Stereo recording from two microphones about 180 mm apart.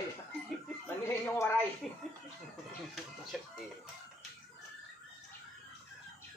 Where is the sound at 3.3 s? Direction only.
Centre (ahead or behind).